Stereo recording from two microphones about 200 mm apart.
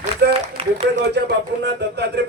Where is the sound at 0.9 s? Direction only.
60° right (ahead or behind).